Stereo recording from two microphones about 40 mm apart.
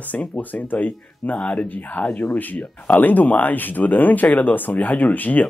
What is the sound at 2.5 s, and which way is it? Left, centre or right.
Speech, left.